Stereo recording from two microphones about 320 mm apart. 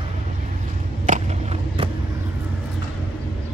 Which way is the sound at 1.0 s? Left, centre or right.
Right.